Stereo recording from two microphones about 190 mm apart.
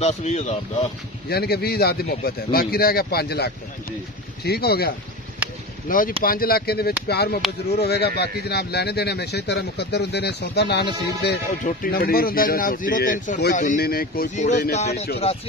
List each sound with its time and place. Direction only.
0.0 s speech: 35° left (ahead or behind)
1.3 s speech: 55° left (ahead or behind)
5.4 s a sound: 5° right (ahead or behind)
5.9 s speech: 45° left (ahead or behind)
11.6 s speech: 50° left (ahead or behind)
14.3 s speech: 40° left (ahead or behind)